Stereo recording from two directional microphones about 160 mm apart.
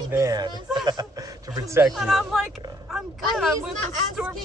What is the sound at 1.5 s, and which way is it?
Speech, 15° right (ahead or behind).